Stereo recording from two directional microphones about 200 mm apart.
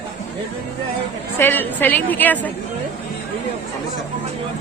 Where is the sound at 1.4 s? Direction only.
10° left (ahead or behind).